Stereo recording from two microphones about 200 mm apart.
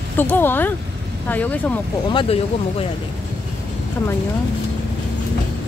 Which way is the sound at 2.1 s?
25° left (ahead or behind).